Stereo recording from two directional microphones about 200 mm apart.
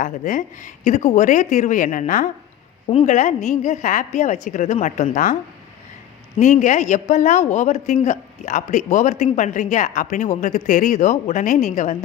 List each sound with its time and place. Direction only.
0.0 s a woman's voice: 40° left (ahead or behind)
6.4 s a woman's voice: 35° left (ahead or behind)